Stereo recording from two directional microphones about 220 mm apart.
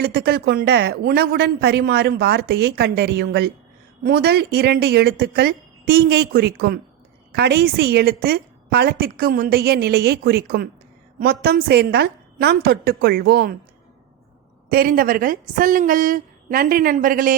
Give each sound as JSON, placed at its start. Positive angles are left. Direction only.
{"t": 0.0, "sound": "speech", "side_deg": -45}
{"t": 14.7, "sound": "a woman's voice", "side_deg": -40}